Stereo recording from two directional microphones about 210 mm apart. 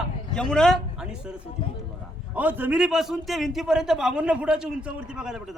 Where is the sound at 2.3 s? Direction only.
10° right (ahead or behind).